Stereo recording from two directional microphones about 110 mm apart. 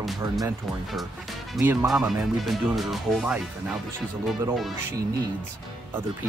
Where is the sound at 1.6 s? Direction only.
20° right (ahead or behind).